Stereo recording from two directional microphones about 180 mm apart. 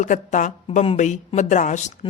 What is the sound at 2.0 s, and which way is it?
Speech, 30° left (ahead or behind).